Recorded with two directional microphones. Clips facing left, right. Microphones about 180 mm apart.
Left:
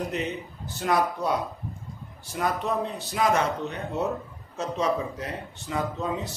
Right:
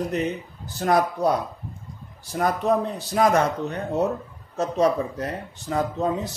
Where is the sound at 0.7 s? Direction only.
40° right (ahead or behind).